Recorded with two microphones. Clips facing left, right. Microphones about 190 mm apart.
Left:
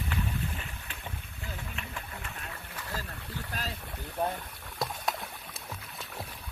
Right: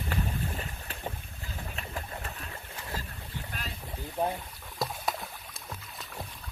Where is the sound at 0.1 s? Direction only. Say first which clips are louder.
Right 3 dB; 40° right (ahead or behind).